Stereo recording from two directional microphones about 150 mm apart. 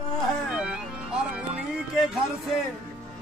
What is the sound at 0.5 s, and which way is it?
Music, 5° right (ahead or behind).